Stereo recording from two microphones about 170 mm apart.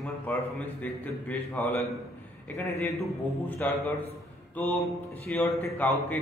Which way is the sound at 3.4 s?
10° left (ahead or behind).